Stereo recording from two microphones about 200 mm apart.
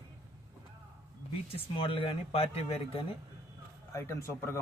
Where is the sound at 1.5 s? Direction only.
25° left (ahead or behind).